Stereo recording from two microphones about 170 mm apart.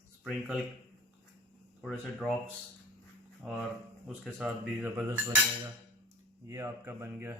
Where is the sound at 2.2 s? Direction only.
10° right (ahead or behind).